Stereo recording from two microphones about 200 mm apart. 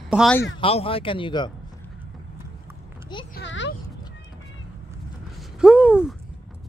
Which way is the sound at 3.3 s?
65° left (ahead or behind).